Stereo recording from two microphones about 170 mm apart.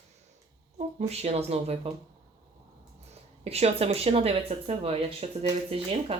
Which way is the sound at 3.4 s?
35° right (ahead or behind).